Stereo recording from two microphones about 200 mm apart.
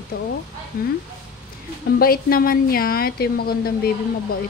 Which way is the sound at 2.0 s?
45° left (ahead or behind).